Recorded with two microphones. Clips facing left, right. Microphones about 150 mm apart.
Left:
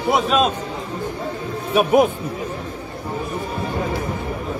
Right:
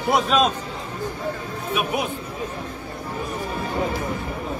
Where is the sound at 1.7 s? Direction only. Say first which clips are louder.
Left 10 dB; 40° left (ahead or behind).